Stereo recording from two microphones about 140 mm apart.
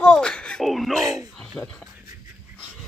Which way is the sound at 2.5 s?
5° left (ahead or behind).